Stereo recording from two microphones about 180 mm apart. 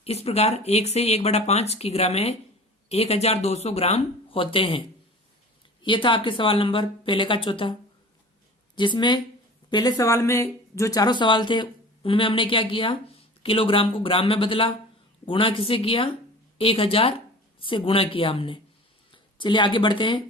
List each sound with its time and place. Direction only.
0.0 s speech: 35° left (ahead or behind)
5.8 s speech: 25° left (ahead or behind)